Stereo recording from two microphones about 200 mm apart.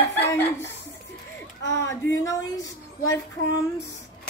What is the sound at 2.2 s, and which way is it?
Speech, 15° left (ahead or behind).